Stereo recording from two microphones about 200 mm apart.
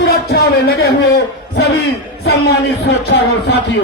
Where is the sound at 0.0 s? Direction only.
50° left (ahead or behind).